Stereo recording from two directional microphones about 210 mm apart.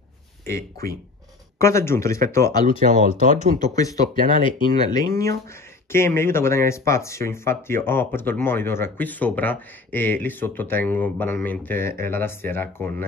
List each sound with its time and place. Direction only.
0.5 s speech: 15° left (ahead or behind)
3.0 s speech: 40° right (ahead or behind)
3.5 s speech: 15° left (ahead or behind)